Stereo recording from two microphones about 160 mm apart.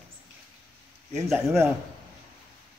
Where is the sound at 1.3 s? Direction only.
15° right (ahead or behind).